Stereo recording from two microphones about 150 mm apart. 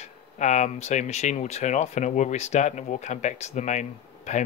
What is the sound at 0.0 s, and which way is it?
Speech, 50° left (ahead or behind).